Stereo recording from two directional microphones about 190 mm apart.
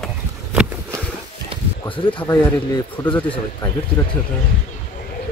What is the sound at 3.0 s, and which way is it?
Speech, 10° left (ahead or behind).